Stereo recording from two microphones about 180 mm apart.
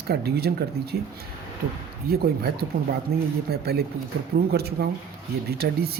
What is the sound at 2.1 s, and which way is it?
Speech, 60° right (ahead or behind).